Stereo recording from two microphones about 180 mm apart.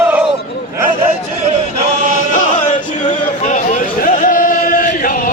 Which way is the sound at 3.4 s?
45° left (ahead or behind).